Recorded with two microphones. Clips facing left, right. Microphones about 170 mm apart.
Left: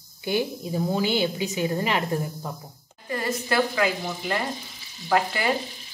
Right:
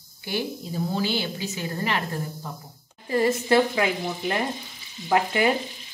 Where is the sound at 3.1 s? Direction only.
25° right (ahead or behind).